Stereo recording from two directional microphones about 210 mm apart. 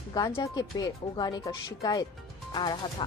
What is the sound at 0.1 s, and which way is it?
Speech, 20° left (ahead or behind).